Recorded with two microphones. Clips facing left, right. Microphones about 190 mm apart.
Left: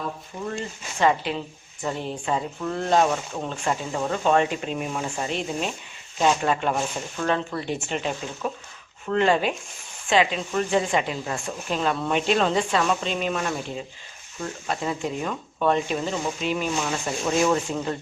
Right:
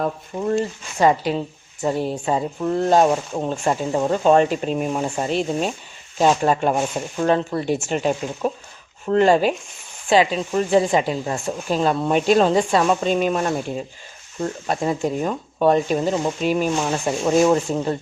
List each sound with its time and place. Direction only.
0.4 s speech: 35° right (ahead or behind)